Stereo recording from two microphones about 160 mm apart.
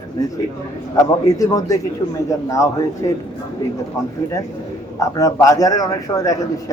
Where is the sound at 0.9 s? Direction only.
20° left (ahead or behind).